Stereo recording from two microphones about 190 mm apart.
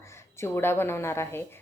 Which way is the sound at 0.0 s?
15° left (ahead or behind).